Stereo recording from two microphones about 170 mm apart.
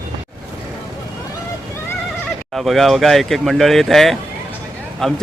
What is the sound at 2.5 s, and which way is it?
Speech, centre (ahead or behind).